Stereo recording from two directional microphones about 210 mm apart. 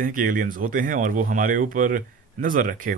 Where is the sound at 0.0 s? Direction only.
40° right (ahead or behind).